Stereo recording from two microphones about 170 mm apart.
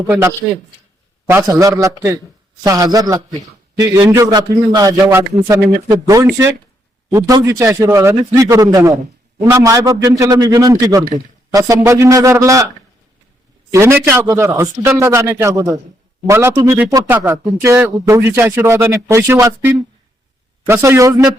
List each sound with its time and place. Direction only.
0.1 s a man's voice: 15° right (ahead or behind)
13.7 s speech: 15° right (ahead or behind)